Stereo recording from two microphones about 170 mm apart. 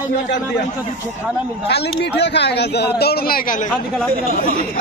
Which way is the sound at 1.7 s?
80° left.